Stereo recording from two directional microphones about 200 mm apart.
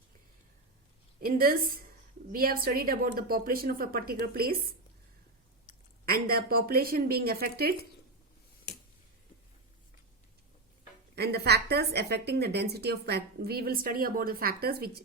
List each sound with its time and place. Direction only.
1.2 s a woman's voice: 45° right (ahead or behind)
6.1 s a woman's voice: 50° right (ahead or behind)
11.1 s a woman's voice: 55° right (ahead or behind)